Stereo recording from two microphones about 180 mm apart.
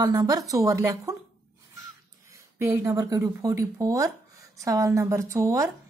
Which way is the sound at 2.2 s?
15° right (ahead or behind).